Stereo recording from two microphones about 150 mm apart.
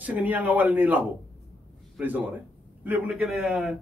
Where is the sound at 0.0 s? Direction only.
10° right (ahead or behind).